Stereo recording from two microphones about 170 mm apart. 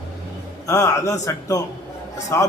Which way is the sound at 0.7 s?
20° left (ahead or behind).